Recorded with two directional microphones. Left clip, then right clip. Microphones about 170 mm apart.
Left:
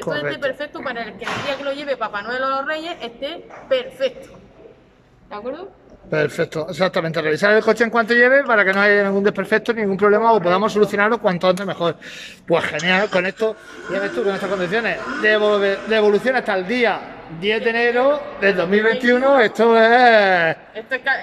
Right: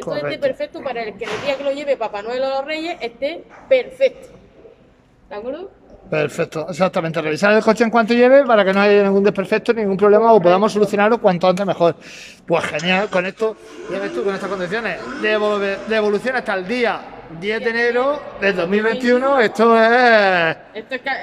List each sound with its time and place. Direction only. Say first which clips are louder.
0.1 s a woman's voice: right 2 dB; 10° right (ahead or behind)
6.0 s speech: even; 5° right (ahead or behind)
20.7 s a woman's voice: left 3 dB; 25° right (ahead or behind)